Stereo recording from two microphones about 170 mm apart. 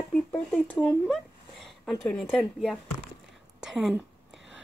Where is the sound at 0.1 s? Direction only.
5° left (ahead or behind).